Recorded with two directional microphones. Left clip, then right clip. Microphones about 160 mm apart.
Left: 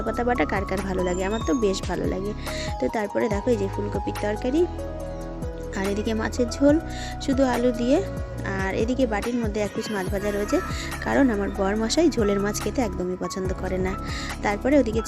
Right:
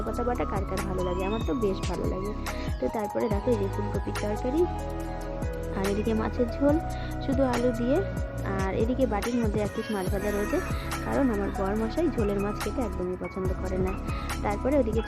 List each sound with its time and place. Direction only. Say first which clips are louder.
0.2 s speech: left 6 dB; 30° left (ahead or behind)
2.9 s speech: left 3 dB; 20° left (ahead or behind)
6.1 s speech: left 2 dB; 15° left (ahead or behind)
9.2 s speech: left 2 dB; centre (ahead or behind)
10.5 s speech: left 5 dB; 15° left (ahead or behind)
11.1 s speech: left 5 dB; 25° left (ahead or behind)
14.4 s speech: left 5 dB; 20° left (ahead or behind)